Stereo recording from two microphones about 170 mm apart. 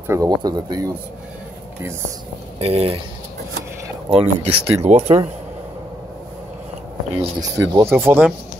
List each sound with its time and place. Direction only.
0.0 s speech: 15° right (ahead or behind)
2.6 s speech: 35° right (ahead or behind)
4.1 s speech: 35° right (ahead or behind)
7.3 s speech: 20° right (ahead or behind)